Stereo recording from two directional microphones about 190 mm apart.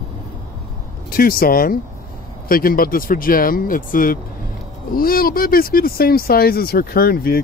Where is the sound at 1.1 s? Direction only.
50° left (ahead or behind).